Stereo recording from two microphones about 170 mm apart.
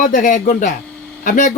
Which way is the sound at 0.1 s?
50° left (ahead or behind).